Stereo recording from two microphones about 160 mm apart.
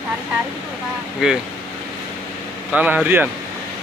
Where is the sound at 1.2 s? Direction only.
5° right (ahead or behind).